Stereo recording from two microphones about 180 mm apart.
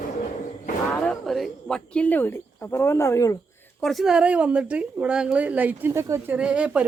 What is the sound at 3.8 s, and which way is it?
A woman's voice, centre (ahead or behind).